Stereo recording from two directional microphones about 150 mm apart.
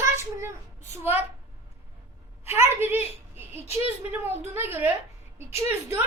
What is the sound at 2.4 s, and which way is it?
Speech, 15° right (ahead or behind).